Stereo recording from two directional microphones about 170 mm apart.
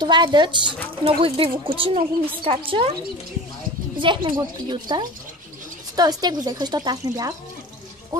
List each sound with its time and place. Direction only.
0.0 s a woman's voice: 25° right (ahead or behind)
4.0 s speech: 30° right (ahead or behind)
8.1 s music: 25° right (ahead or behind)